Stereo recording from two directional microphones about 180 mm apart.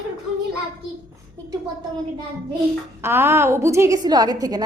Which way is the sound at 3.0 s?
15° right (ahead or behind).